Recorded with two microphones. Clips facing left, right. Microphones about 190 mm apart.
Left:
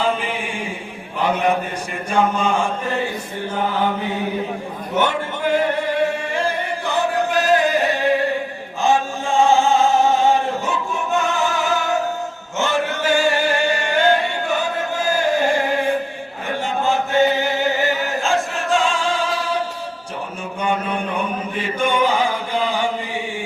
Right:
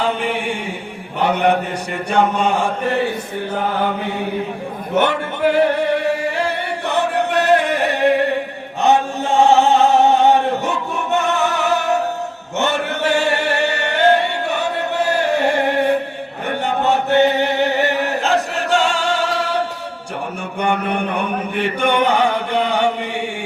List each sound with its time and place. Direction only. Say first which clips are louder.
0.0 s mantra: right 2 dB; 65° right (ahead or behind)
2.0 s chant: right 2 dB; 65° right (ahead or behind)
6.2 s chant: right 2 dB; 70° right (ahead or behind)